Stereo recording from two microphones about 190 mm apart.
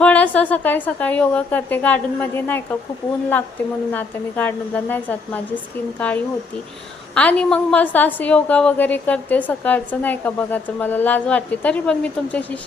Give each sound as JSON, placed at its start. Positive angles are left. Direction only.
{"t": 0.0, "sound": "a woman's voice", "side_deg": 10}
{"t": 3.9, "sound": "a woman's voice", "side_deg": 10}